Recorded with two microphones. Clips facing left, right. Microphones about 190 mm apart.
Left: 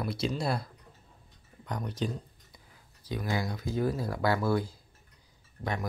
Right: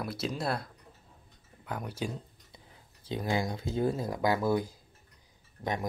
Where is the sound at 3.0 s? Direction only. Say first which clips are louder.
Right 2 dB; 25° right (ahead or behind).